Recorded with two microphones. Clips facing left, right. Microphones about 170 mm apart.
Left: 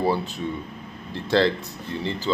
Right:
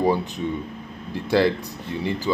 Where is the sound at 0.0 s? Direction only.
15° right (ahead or behind).